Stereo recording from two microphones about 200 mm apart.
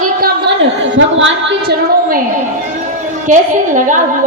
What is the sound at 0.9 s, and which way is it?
Speech, 70° right (ahead or behind).